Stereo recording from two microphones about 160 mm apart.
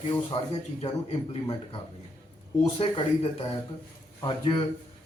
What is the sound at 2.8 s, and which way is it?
A man's voice, 35° left (ahead or behind).